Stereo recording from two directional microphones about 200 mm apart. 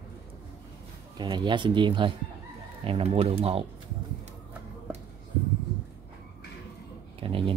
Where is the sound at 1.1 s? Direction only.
25° right (ahead or behind).